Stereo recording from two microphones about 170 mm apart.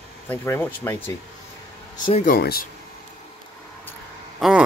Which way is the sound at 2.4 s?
65° left (ahead or behind).